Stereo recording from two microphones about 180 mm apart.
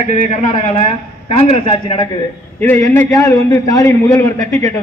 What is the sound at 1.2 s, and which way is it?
Speech, 35° left (ahead or behind).